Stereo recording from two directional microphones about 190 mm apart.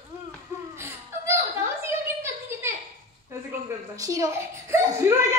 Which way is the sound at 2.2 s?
15° right (ahead or behind).